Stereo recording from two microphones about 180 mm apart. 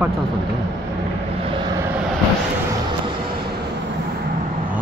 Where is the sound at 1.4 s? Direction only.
30° right (ahead or behind).